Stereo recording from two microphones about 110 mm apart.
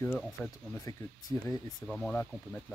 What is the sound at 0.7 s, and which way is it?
Speech, 30° left (ahead or behind).